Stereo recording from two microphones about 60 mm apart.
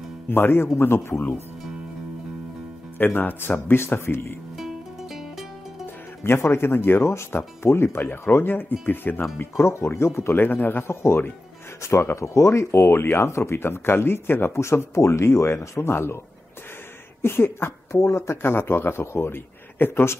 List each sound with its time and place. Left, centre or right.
0.3 s speech: left
3.0 s speech: left
4.6 s music: centre
6.2 s speech: left
9.7 s speech: left
10.3 s speech: left
10.9 s speech: left
17.2 s speech: left